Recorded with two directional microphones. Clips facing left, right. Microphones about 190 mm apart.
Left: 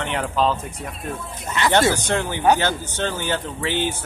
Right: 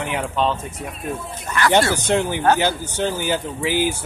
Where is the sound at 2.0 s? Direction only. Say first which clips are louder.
Right 1 dB; 15° right (ahead or behind).